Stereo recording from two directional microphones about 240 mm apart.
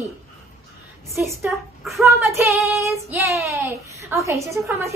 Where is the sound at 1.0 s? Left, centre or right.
Centre.